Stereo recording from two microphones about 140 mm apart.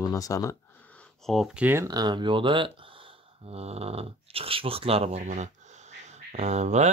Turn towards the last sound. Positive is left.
turn(degrees=-55)  # may be behind; listen again after turning